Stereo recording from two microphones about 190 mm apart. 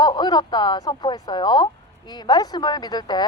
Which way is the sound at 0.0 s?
25° left (ahead or behind).